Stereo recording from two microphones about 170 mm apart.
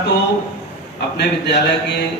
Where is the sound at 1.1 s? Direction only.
85° left.